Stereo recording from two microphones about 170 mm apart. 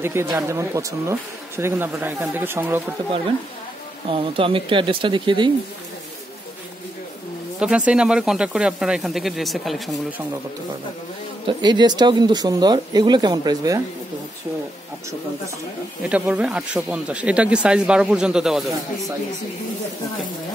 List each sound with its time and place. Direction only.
0.0 s speech: 15° right (ahead or behind)
4.1 s speech: 30° right (ahead or behind)
7.6 s speech: 5° right (ahead or behind)
11.4 s speech: 25° right (ahead or behind)
16.0 s speech: 10° right (ahead or behind)